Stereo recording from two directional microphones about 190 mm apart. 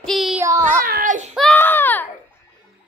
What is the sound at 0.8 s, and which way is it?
Baby cry, 45° right (ahead or behind).